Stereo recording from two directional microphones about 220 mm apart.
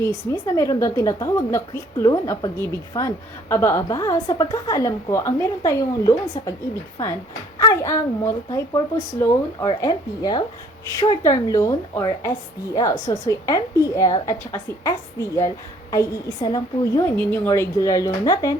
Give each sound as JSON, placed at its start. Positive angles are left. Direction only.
{"t": 0.0, "sound": "a woman's voice", "side_deg": 15}
{"t": 7.6, "sound": "a woman's voice", "side_deg": 15}